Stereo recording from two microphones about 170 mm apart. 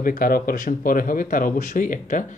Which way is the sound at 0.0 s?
55° left (ahead or behind).